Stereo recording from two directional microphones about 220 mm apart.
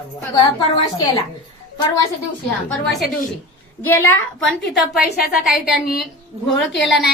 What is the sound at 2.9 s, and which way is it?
A woman's voice, centre (ahead or behind).